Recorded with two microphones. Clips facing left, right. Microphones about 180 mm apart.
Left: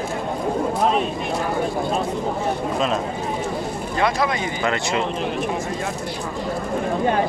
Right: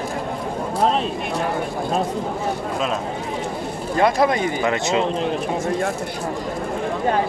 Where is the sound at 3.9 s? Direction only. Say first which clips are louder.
Right 4 dB; 45° right (ahead or behind).